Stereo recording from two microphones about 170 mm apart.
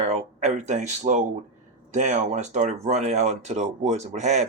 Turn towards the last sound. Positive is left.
turn(degrees=-45)  # may be behind; listen again after turning